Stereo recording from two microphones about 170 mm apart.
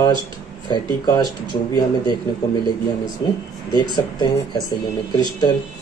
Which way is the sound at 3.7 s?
25° left (ahead or behind).